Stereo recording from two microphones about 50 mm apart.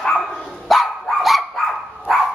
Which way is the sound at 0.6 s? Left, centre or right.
Centre.